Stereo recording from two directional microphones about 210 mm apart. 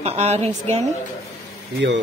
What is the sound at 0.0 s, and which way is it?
Speech, 30° right (ahead or behind).